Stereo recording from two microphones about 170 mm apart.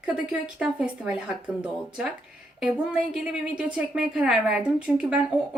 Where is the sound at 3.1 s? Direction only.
5° right (ahead or behind).